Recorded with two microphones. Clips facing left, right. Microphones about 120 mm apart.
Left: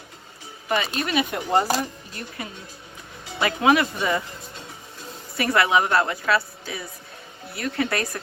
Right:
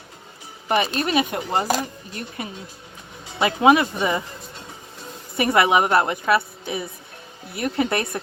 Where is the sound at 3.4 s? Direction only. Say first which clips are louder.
Right 3 dB; 20° right (ahead or behind).